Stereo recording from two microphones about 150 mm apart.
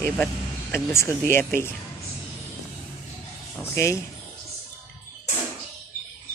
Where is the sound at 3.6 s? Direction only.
20° left (ahead or behind).